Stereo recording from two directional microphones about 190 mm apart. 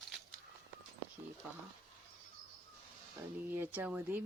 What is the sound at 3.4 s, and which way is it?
Speech, 10° right (ahead or behind).